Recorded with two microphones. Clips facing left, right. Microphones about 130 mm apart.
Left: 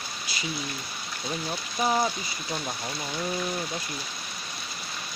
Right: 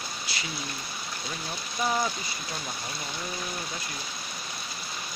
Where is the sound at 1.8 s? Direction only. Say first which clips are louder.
Left 3 dB; 25° left (ahead or behind).